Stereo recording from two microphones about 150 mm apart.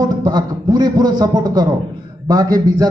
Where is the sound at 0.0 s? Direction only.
30° right (ahead or behind).